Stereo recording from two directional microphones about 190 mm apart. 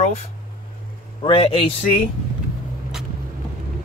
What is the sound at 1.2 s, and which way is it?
Speech, 30° left (ahead or behind).